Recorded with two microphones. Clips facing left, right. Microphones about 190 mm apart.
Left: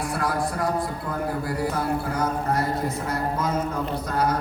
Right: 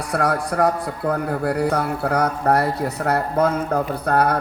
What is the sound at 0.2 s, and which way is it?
A man's voice, 70° right (ahead or behind).